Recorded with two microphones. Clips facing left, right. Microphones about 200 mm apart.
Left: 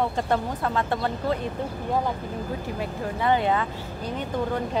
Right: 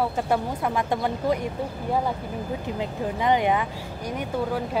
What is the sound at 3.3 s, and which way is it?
Speech, 15° right (ahead or behind).